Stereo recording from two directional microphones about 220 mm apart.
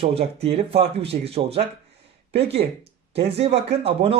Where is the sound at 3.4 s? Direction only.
30° right (ahead or behind).